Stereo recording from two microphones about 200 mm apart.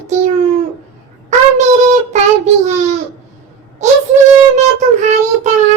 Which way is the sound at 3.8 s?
35° right (ahead or behind).